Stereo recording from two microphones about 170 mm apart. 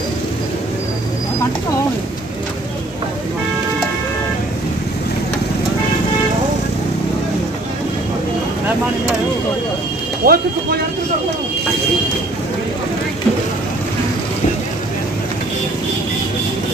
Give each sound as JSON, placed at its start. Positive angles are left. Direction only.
{"t": 10.2, "sound": "speech", "side_deg": -65}